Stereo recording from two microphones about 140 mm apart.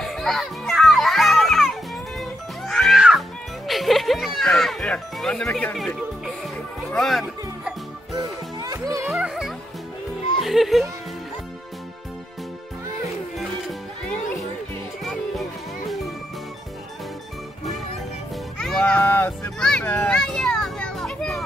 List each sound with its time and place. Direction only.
0.0 s children playing: centre (ahead or behind)
2.1 s music: centre (ahead or behind)
6.9 s speech: centre (ahead or behind)
8.1 s music: 30° right (ahead or behind)
9.1 s music: 5° right (ahead or behind)
10.4 s a child's voice: centre (ahead or behind)
13.4 s music: centre (ahead or behind)
18.6 s a sound: 5° left (ahead or behind)
19.6 s children playing: 10° left (ahead or behind)